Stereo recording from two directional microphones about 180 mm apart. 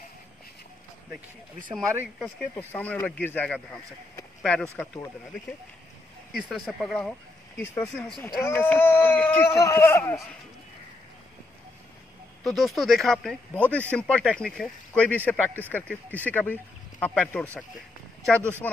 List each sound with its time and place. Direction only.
1.7 s speech: 15° right (ahead or behind)
2.1 s speech: centre (ahead or behind)
6.3 s speech: centre (ahead or behind); by 7.9 s 15° left (ahead or behind)
7.9 s speech: centre (ahead or behind)
8.2 s speech: 15° left (ahead or behind)
12.4 s speech: centre (ahead or behind)